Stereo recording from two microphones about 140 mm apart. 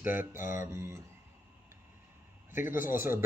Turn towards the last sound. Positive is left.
turn(degrees=-15)  # may be behind; listen again after turning